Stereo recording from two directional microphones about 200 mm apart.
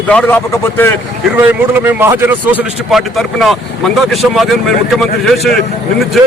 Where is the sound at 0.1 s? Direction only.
5° left (ahead or behind).